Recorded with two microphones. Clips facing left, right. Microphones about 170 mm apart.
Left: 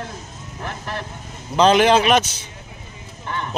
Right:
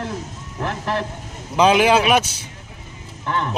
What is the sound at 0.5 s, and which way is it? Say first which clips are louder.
Vehicle: right 6 dB; 90° right.